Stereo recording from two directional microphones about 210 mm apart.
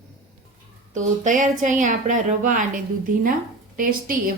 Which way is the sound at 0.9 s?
35° right (ahead or behind).